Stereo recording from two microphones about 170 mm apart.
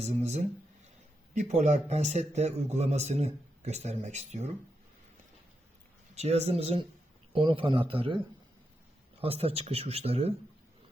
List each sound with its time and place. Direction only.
0.0 s speech: 40° right (ahead or behind)
6.1 s speech: 40° right (ahead or behind)
9.2 s speech: 35° right (ahead or behind)